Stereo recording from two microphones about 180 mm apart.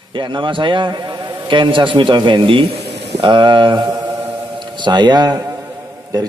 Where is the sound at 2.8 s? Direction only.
65° right (ahead or behind).